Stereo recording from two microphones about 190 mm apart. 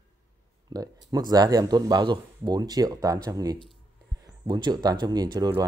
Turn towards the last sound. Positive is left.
turn(degrees=-20)  # may be behind; listen again after turning